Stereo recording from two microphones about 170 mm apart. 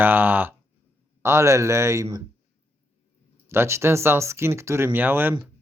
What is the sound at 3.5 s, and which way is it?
Speech, 15° right (ahead or behind).